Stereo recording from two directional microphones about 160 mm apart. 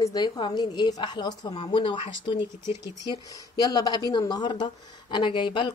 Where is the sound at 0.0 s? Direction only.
25° left (ahead or behind).